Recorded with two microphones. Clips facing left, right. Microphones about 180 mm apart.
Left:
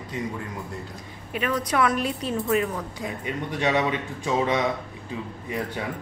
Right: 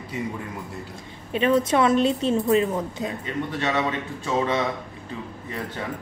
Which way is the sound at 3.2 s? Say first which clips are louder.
Left 4 dB; 15° left (ahead or behind).